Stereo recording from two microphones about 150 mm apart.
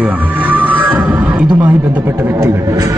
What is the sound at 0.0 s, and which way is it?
Music, 10° right (ahead or behind).